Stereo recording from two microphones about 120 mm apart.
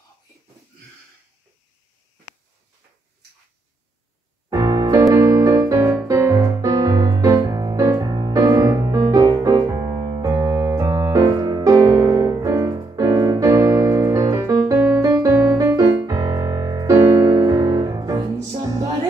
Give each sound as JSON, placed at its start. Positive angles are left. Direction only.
{"t": 4.5, "sound": "music", "side_deg": -30}
{"t": 9.8, "sound": "keyboard", "side_deg": -35}